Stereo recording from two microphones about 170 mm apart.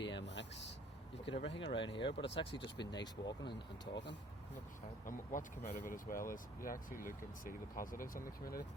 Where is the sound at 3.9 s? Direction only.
90° left.